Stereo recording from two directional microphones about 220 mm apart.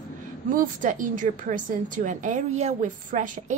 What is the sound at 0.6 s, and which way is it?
A woman's voice, 35° right (ahead or behind).